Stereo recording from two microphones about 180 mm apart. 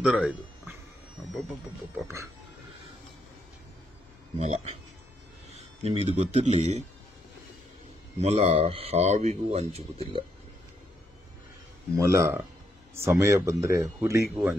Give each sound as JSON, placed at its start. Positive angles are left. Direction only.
{"t": 0.0, "sound": "speech", "side_deg": -5}
{"t": 4.4, "sound": "speech", "side_deg": -40}
{"t": 8.2, "sound": "speech", "side_deg": -35}
{"t": 12.2, "sound": "speech", "side_deg": -15}